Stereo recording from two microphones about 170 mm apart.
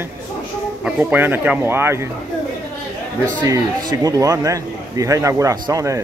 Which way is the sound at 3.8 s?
20° right (ahead or behind).